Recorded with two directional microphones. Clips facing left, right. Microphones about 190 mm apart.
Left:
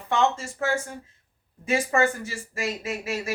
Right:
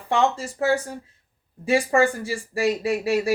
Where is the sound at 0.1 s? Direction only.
35° right (ahead or behind).